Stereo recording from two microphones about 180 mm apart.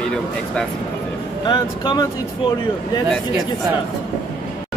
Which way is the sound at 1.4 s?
25° left (ahead or behind).